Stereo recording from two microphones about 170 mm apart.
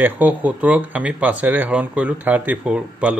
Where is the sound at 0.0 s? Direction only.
10° right (ahead or behind).